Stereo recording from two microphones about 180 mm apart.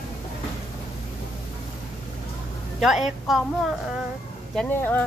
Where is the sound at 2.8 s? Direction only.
Centre (ahead or behind).